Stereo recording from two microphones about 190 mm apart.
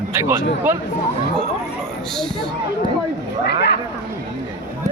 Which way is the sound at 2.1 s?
5° left (ahead or behind).